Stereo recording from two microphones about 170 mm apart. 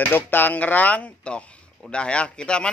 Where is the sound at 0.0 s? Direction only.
10° left (ahead or behind).